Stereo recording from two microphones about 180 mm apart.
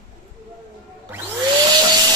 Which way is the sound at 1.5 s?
20° right (ahead or behind).